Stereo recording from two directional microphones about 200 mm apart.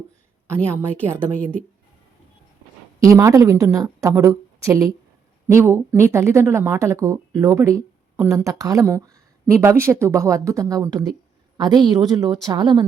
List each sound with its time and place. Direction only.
0.4 s a woman's voice: 15° right (ahead or behind)
3.0 s a woman's voice: 15° right (ahead or behind)